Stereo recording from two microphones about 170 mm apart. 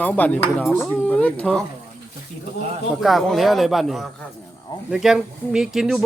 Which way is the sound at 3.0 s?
Centre (ahead or behind).